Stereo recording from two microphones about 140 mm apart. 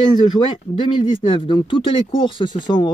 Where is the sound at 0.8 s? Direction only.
35° left (ahead or behind).